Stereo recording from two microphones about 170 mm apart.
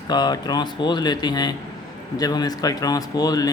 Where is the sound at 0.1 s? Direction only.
25° left (ahead or behind).